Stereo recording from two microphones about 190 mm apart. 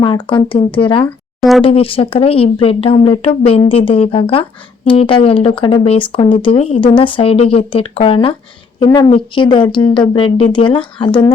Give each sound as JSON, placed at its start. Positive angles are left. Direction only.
{"t": 0.0, "sound": "speech", "side_deg": 25}
{"t": 1.4, "sound": "speech", "side_deg": 0}
{"t": 1.6, "sound": "speech", "side_deg": 30}